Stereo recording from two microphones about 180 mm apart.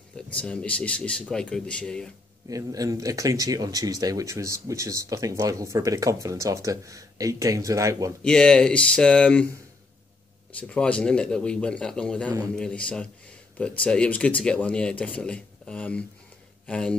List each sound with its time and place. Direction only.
0.4 s a man's voice: 5° left (ahead or behind)
2.5 s speech: 20° right (ahead or behind)
8.2 s a man's voice: 5° left (ahead or behind)
10.6 s a man's voice: 5° left (ahead or behind)